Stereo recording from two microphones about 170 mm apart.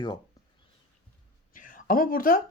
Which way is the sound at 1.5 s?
50° left (ahead or behind).